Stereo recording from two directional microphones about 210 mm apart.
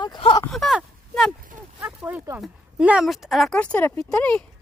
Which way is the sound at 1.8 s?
10° right (ahead or behind).